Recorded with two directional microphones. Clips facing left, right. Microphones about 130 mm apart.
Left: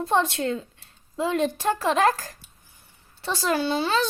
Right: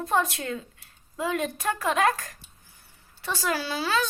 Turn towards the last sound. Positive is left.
turn(degrees=25)  # may be behind; listen again after turning